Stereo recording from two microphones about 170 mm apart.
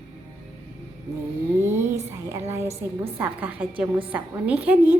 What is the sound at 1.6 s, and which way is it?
A woman's voice, 15° right (ahead or behind).